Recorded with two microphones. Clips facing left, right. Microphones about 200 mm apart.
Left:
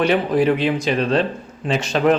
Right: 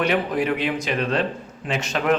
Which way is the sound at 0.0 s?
30° left (ahead or behind).